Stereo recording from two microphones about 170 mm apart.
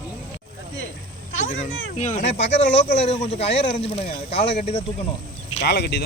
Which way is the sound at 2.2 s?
90° left.